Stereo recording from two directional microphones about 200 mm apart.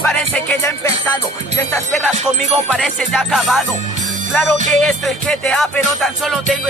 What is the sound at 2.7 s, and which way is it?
Music, centre (ahead or behind).